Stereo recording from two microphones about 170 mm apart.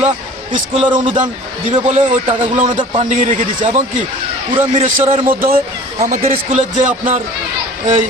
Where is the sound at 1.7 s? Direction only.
40° right (ahead or behind).